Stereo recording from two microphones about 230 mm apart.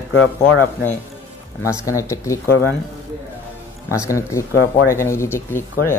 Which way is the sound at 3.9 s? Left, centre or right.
Centre.